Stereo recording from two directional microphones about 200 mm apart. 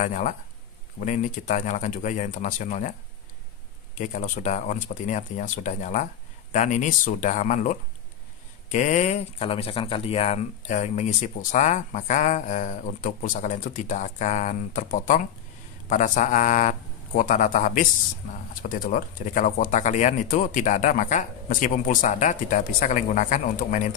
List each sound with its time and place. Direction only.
0.0 s speech: 40° left (ahead or behind)
4.0 s speech: 40° left (ahead or behind)